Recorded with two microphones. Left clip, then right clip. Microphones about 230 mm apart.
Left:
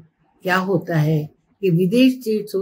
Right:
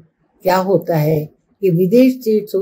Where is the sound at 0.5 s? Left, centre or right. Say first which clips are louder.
Right 6 dB; centre.